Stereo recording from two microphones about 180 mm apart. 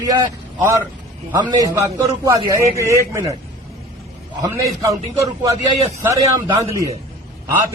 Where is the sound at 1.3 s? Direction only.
20° right (ahead or behind).